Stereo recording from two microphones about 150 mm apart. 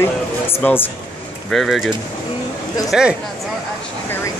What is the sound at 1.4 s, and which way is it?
Speech, centre (ahead or behind).